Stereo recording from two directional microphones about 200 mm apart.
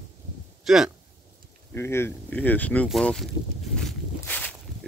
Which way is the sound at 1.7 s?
10° left (ahead or behind).